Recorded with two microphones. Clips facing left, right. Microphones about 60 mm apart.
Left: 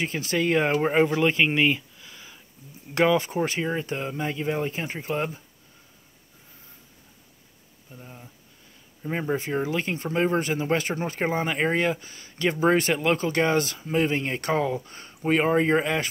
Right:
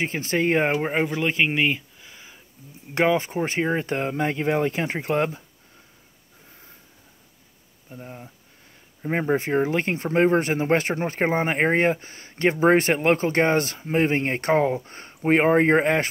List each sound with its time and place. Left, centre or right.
0.0 s speech: right
0.8 s speech: centre; by 5.4 s right
7.9 s speech: right